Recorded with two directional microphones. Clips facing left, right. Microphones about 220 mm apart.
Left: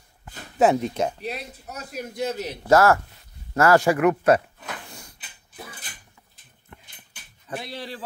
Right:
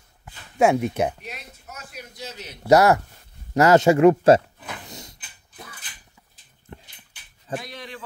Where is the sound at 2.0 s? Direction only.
55° left (ahead or behind).